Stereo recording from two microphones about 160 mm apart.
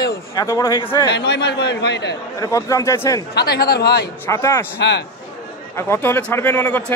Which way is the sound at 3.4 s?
75° left (ahead or behind).